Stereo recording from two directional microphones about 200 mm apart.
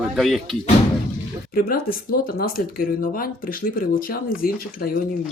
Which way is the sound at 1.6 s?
45° left (ahead or behind).